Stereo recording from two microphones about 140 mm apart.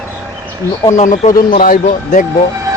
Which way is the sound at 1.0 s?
70° left (ahead or behind).